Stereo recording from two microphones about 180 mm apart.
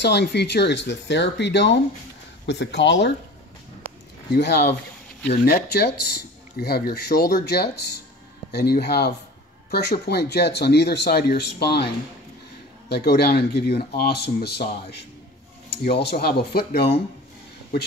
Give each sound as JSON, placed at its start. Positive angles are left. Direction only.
{"t": 0.0, "sound": "speech", "side_deg": 70}
{"t": 4.3, "sound": "speech", "side_deg": 65}
{"t": 12.9, "sound": "speech", "side_deg": 65}